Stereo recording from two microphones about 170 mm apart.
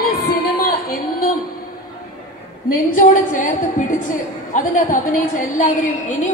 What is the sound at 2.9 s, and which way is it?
Speech, 50° left (ahead or behind).